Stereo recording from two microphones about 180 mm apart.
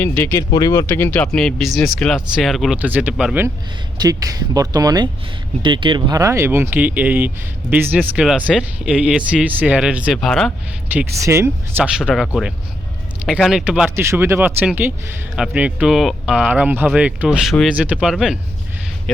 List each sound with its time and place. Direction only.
0.0 s speech: 10° left (ahead or behind); by 3.5 s 10° right (ahead or behind)
3.9 s speech: 20° right (ahead or behind); by 10.5 s centre (ahead or behind)
10.9 s speech: 15° right (ahead or behind)
11.9 s speech: 5° right (ahead or behind)